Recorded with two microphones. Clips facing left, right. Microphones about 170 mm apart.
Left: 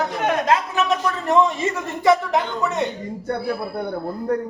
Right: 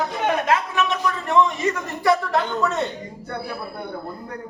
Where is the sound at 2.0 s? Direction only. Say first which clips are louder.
Left 2 dB; 15° left (ahead or behind).